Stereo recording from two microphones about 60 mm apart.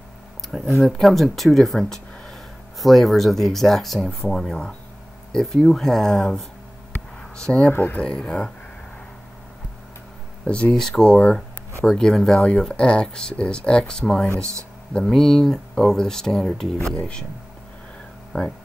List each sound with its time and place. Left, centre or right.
0.5 s speech: centre
7.7 s speech: left
8.0 s speech: centre
10.4 s speech: left
10.7 s speech: centre
11.8 s speech: centre
18.3 s speech: left